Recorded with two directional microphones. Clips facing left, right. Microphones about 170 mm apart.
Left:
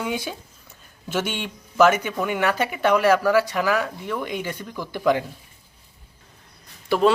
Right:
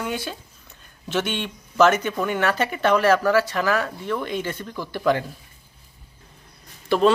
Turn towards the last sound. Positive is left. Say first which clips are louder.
# right 1 dB
turn(degrees=10)  # may be behind; listen again after turning